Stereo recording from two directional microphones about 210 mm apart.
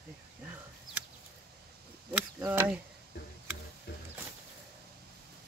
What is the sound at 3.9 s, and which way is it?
Music, 50° left (ahead or behind).